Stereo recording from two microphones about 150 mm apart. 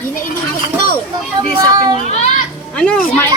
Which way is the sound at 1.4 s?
30° right (ahead or behind).